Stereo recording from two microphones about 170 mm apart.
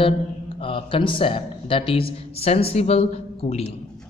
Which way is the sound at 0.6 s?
30° left (ahead or behind).